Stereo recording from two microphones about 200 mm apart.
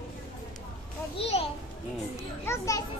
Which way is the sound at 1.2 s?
30° left (ahead or behind).